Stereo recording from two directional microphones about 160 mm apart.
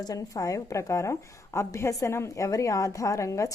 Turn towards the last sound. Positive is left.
turn(degrees=20)  # may be behind; listen again after turning